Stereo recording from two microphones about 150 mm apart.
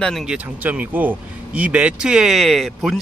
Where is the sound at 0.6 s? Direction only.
10° right (ahead or behind).